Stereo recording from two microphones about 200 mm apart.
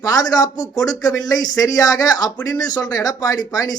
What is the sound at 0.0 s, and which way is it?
A man's voice, 20° left (ahead or behind).